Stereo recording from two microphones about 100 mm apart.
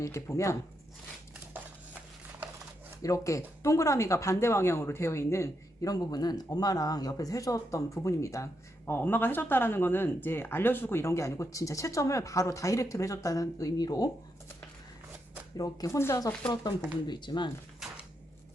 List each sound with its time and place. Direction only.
0.0 s speech: 30° left (ahead or behind)
1.5 s a sound: 20° right (ahead or behind)
3.0 s speech: 35° left (ahead or behind)
8.9 s speech: 20° left (ahead or behind); by 14.1 s 40° left (ahead or behind)
15.5 s speech: 35° left (ahead or behind)
17.1 s speech: 50° left (ahead or behind)
17.8 s cupboard open or close: 5° right (ahead or behind)